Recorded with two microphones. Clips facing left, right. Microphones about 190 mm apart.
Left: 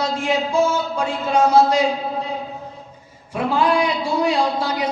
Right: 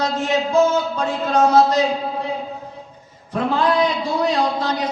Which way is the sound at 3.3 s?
10° left (ahead or behind).